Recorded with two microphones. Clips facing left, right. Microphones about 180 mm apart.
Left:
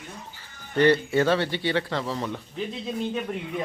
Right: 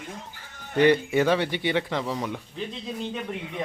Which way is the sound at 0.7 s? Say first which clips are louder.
Even; 15° right (ahead or behind).